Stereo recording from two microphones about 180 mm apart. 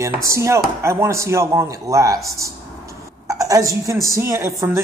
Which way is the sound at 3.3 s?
20° right (ahead or behind).